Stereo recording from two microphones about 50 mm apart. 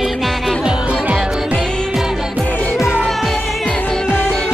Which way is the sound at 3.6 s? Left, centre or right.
Left.